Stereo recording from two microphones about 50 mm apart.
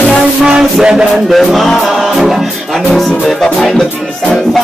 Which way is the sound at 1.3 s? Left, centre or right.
Centre.